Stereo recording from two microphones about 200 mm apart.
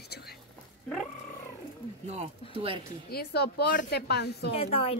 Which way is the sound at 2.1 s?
30° right (ahead or behind).